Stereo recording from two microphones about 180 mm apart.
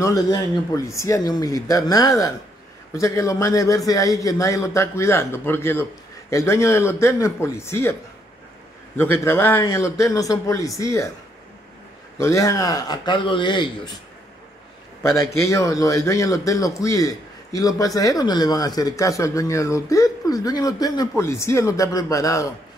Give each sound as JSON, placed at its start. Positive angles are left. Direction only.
{"t": 0.0, "sound": "a man's voice", "side_deg": 20}
{"t": 8.9, "sound": "a man's voice", "side_deg": 10}
{"t": 12.2, "sound": "speech", "side_deg": 15}
{"t": 15.0, "sound": "a man's voice", "side_deg": 15}